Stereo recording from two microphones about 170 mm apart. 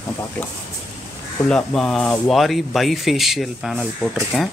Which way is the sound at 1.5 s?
5° left (ahead or behind).